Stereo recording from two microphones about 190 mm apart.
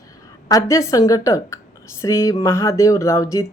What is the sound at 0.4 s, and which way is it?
Speech, 15° left (ahead or behind).